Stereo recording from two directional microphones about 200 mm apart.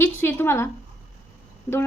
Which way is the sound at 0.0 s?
10° left (ahead or behind).